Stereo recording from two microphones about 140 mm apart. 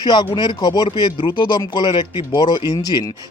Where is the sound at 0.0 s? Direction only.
30° left (ahead or behind).